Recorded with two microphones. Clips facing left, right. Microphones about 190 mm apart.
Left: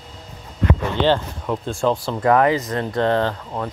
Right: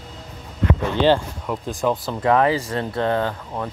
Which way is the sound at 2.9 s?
10° right (ahead or behind).